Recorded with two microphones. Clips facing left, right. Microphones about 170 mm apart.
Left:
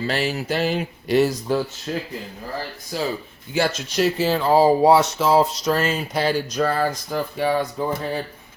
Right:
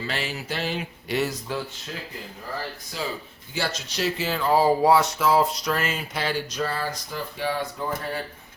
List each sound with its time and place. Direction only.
0.1 s speech: 40° left (ahead or behind)
4.3 s a sound: 30° left (ahead or behind); by 7.6 s 50° left (ahead or behind)
7.8 s speech: 15° left (ahead or behind)